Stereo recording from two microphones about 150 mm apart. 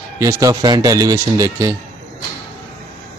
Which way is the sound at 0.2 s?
20° right (ahead or behind).